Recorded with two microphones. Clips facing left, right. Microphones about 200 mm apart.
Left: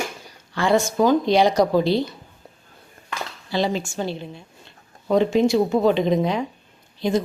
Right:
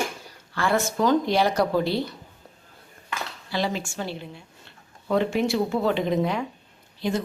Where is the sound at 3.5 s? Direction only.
20° left (ahead or behind).